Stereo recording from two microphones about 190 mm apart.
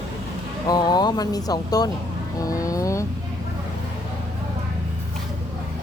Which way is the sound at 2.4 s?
20° left (ahead or behind).